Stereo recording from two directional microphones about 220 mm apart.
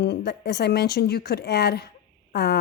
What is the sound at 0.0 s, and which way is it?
A woman's voice, 50° left (ahead or behind).